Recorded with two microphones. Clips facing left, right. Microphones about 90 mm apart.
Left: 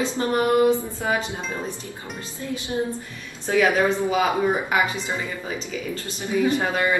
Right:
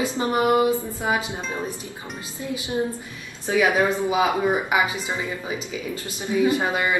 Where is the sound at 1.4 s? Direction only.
Centre (ahead or behind).